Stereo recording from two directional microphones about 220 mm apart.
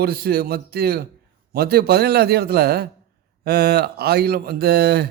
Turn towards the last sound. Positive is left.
turn(degrees=-45)  # may be behind; listen again after turning